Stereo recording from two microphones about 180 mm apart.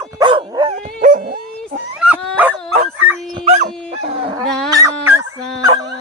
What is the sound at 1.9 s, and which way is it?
Dog, 5° right (ahead or behind).